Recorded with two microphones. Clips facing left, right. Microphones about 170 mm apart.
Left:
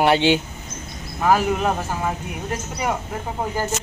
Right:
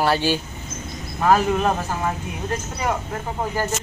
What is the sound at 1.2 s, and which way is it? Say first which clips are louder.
Speech: right 1 dB; 10° left (ahead or behind).